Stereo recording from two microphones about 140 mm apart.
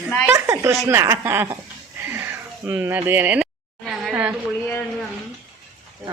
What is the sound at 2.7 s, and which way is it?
A woman's voice, 15° right (ahead or behind).